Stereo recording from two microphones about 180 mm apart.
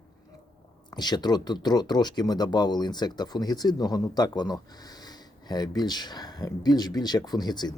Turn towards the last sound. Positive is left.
turn(degrees=20)  # may be behind; listen again after turning